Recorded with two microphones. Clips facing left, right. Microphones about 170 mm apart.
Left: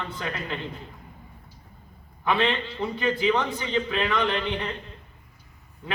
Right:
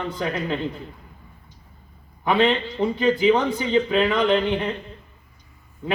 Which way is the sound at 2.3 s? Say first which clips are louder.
Right 5 dB; 40° right (ahead or behind).